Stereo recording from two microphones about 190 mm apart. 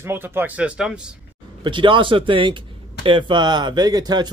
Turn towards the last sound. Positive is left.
turn(degrees=-20)  # may be behind; listen again after turning